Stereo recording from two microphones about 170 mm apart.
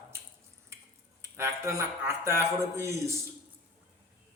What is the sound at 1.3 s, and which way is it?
A man's voice, 15° right (ahead or behind).